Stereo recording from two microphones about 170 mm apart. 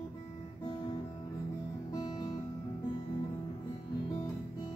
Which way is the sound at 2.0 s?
25° left (ahead or behind).